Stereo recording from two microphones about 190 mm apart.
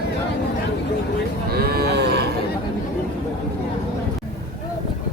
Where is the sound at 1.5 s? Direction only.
55° right (ahead or behind).